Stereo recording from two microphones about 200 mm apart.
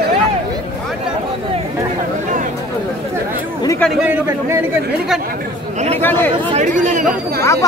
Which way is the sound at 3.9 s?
10° right (ahead or behind).